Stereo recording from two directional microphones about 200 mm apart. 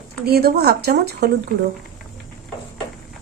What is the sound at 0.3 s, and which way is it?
A woman's voice, 50° right (ahead or behind).